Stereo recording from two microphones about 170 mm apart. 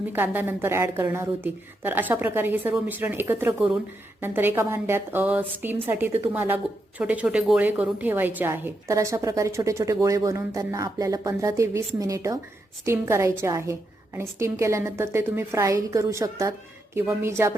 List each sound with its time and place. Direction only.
0.1 s a woman's voice: 10° right (ahead or behind)